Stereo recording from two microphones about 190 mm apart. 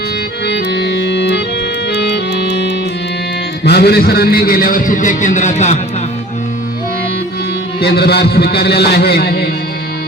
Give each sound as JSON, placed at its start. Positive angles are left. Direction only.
{"t": 0.4, "sound": "organ", "side_deg": 60}
{"t": 1.9, "sound": "music", "side_deg": 60}
{"t": 3.6, "sound": "a man's voice", "side_deg": 55}
{"t": 7.8, "sound": "a man's voice", "side_deg": 55}